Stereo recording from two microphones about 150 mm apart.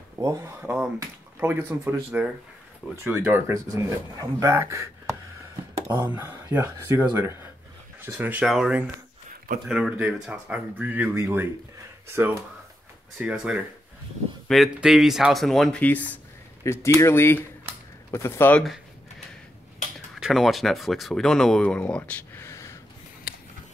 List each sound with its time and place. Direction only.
0.2 s speech: 20° right (ahead or behind)
0.6 s speech: 10° right (ahead or behind)
0.9 s speech: 20° right (ahead or behind)
5.8 s a sound: 30° right (ahead or behind)
6.0 s speech: 15° right (ahead or behind); by 18.6 s 15° left (ahead or behind)
18.6 s a sound: centre (ahead or behind)
20.2 s speech: centre (ahead or behind); by 22.8 s 20° left (ahead or behind)